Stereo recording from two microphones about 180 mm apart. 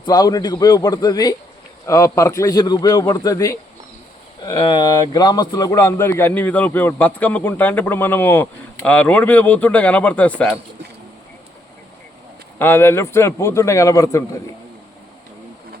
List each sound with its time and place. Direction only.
0.0 s a man's voice: 20° left (ahead or behind); by 10.6 s 5° left (ahead or behind)
12.5 s speech: 10° left (ahead or behind)